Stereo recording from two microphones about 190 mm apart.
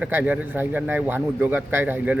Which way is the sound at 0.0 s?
10° right (ahead or behind).